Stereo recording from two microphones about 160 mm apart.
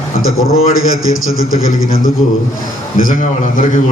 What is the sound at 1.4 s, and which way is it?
Speech, 20° right (ahead or behind).